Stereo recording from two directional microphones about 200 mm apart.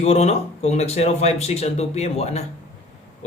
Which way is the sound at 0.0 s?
35° left (ahead or behind).